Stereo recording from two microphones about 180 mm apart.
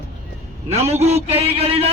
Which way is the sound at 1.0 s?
35° right (ahead or behind).